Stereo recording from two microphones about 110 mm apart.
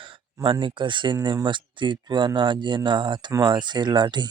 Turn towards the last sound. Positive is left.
turn(degrees=-40)  # may be behind; listen again after turning